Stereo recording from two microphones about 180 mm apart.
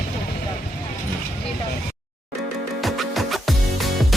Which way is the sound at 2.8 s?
Centre (ahead or behind).